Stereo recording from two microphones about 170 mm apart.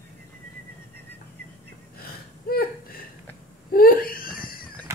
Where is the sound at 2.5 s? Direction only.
60° left (ahead or behind).